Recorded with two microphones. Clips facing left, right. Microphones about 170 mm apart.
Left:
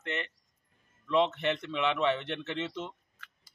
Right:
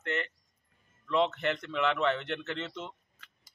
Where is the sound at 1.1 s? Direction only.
5° left (ahead or behind).